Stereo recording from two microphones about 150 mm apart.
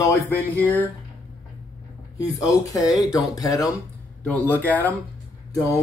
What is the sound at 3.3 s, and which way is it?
Speech, 25° left (ahead or behind).